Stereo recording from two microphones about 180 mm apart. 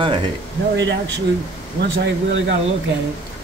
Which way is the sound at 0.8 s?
75° right (ahead or behind).